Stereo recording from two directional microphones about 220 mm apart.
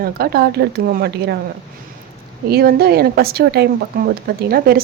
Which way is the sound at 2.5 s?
45° right (ahead or behind).